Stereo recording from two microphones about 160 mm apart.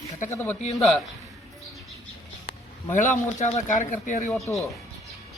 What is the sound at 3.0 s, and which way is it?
Speech, 50° left (ahead or behind).